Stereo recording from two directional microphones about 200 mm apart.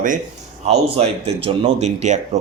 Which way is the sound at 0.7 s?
35° right (ahead or behind).